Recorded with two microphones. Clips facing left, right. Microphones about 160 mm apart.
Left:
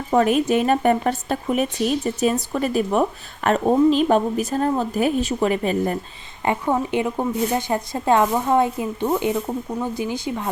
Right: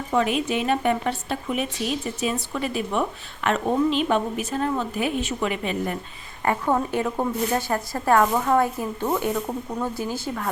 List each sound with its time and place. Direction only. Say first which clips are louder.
0.1 s speech: left 6 dB; 45° left (ahead or behind)
6.4 s speech: left 1 dB; 20° left (ahead or behind)